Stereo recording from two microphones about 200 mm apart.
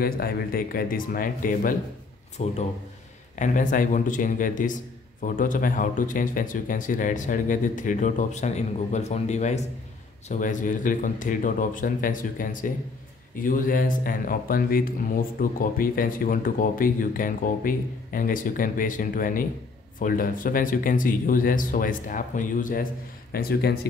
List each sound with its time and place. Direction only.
0.0 s speech: 50° left (ahead or behind)